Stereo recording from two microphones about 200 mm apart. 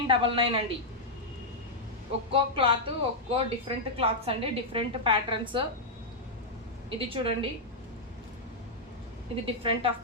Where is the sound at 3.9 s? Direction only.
30° right (ahead or behind).